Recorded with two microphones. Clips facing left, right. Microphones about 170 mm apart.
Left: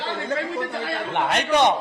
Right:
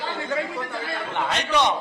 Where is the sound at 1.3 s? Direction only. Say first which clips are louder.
Left 4 dB; 50° left (ahead or behind).